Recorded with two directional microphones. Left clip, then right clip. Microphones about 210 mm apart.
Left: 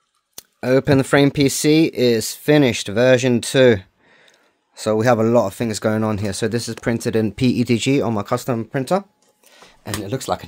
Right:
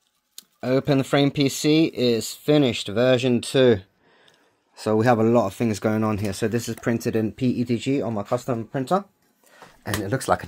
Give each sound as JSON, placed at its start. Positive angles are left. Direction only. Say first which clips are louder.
{"t": 0.6, "sound": "speech", "louder": "left 6 dB", "side_deg": 35}
{"t": 10.0, "sound": "speech", "louder": "right 1 dB", "side_deg": 0}